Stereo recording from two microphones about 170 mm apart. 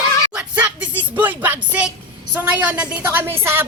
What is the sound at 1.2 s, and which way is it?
Music, 10° right (ahead or behind).